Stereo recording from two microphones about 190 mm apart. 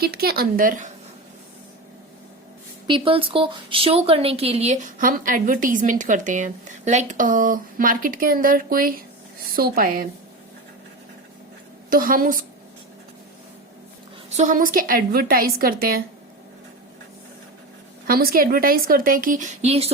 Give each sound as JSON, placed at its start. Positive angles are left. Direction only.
{"t": 0.0, "sound": "speech", "side_deg": -55}
{"t": 2.8, "sound": "speech", "side_deg": -25}
{"t": 11.9, "sound": "speech", "side_deg": -50}
{"t": 14.3, "sound": "speech", "side_deg": -40}
{"t": 18.0, "sound": "speech", "side_deg": -50}